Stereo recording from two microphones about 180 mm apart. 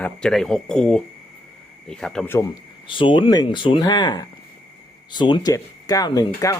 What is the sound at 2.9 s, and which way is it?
Speech, 25° left (ahead or behind).